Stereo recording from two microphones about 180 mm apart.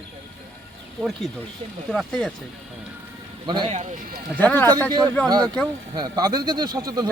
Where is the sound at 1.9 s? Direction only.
Centre (ahead or behind).